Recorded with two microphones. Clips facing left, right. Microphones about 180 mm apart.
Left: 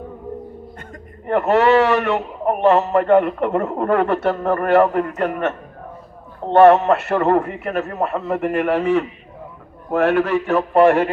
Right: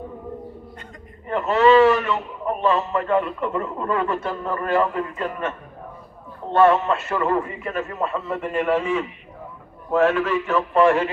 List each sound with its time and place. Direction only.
1.3 s a man's voice: 65° left (ahead or behind)